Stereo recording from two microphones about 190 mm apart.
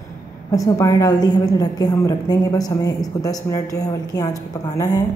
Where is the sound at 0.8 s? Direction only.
15° left (ahead or behind).